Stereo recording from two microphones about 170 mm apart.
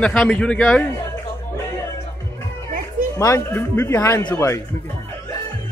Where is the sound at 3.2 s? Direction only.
20° left (ahead or behind).